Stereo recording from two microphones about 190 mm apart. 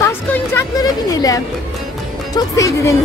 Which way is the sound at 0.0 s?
15° left (ahead or behind).